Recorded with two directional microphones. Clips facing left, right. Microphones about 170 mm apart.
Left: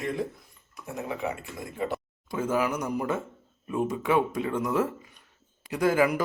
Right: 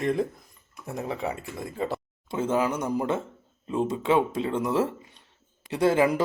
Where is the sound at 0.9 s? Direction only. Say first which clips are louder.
Right 1 dB; 35° right (ahead or behind).